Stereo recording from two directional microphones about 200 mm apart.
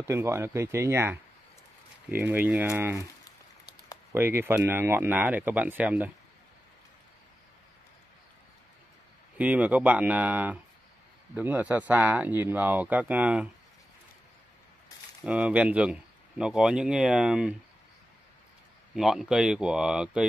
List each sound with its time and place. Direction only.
0.0 s speech: 15° right (ahead or behind)
3.3 s a sound: 20° left (ahead or behind)
4.1 s speech: 10° right (ahead or behind)
9.4 s speech: 5° right (ahead or behind)
15.2 s speech: 5° right (ahead or behind)
18.9 s speech: centre (ahead or behind)